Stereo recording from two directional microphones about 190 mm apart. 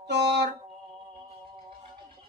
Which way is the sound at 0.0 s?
65° right (ahead or behind).